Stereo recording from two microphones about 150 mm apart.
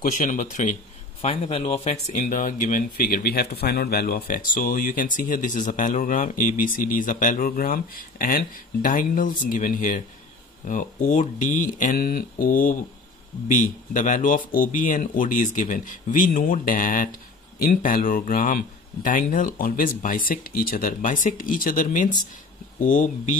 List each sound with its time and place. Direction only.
0.0 s speech: 55° left (ahead or behind)
1.2 s speech: 40° left (ahead or behind); by 12.8 s 65° left (ahead or behind)
13.9 s speech: 60° left (ahead or behind)